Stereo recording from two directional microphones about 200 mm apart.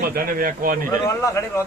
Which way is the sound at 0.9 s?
15° left (ahead or behind).